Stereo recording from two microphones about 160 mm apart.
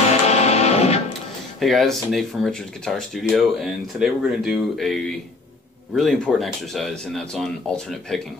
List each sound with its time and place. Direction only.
0.1 s music: 45° left (ahead or behind)
1.6 s speech: centre (ahead or behind)